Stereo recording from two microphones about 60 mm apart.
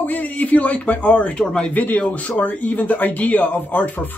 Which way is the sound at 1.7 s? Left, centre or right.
Left.